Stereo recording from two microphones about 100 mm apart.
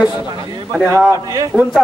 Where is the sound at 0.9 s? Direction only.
25° right (ahead or behind).